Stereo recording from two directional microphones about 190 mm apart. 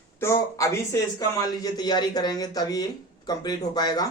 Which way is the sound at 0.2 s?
15° left (ahead or behind).